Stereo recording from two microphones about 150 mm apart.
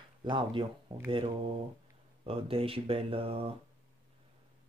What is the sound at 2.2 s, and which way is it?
Speech, 40° right (ahead or behind).